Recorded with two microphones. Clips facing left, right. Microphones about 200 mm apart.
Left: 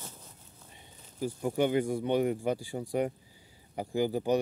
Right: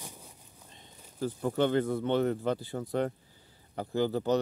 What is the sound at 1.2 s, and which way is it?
Speech, 10° left (ahead or behind).